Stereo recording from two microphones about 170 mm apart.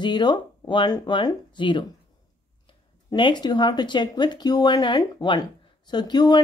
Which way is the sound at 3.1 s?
25° left (ahead or behind).